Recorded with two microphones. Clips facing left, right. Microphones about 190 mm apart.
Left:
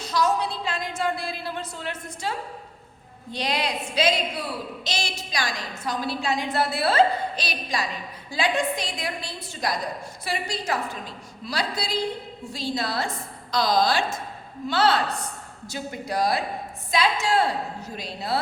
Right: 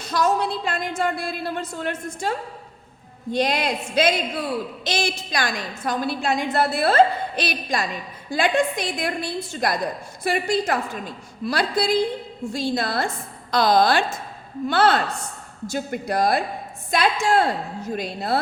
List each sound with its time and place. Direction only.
0.0 s a woman's voice: 50° right (ahead or behind)